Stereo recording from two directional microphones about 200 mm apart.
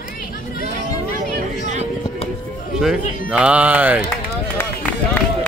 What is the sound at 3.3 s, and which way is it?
Music, 5° right (ahead or behind).